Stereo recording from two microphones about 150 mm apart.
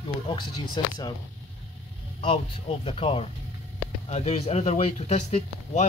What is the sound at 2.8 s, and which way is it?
Speech, 40° left (ahead or behind).